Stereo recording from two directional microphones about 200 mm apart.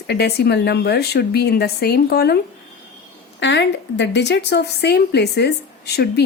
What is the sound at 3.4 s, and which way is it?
A woman's voice, 60° left (ahead or behind).